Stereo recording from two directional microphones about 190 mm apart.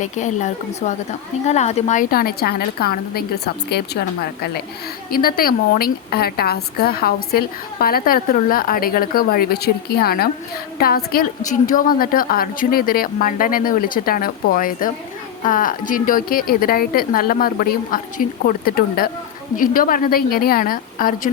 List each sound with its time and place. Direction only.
0.0 s a woman's voice: 40° left (ahead or behind)